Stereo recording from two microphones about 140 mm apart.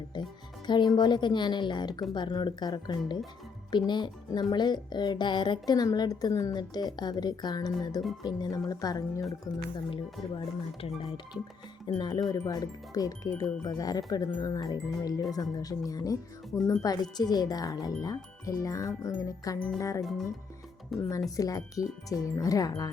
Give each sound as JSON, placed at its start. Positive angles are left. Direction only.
{"t": 0.1, "sound": "music", "side_deg": 30}
{"t": 0.7, "sound": "speech", "side_deg": 30}
{"t": 9.7, "sound": "speech", "side_deg": 40}
{"t": 11.9, "sound": "speech", "side_deg": 30}
{"t": 20.0, "sound": "music", "side_deg": 0}
{"t": 21.3, "sound": "speech", "side_deg": 25}